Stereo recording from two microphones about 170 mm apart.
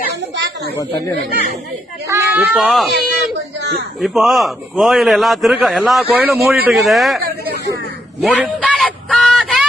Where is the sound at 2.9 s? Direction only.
75° right (ahead or behind).